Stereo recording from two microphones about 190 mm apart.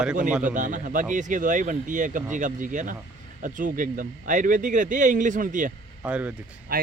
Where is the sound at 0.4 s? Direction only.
45° right (ahead or behind).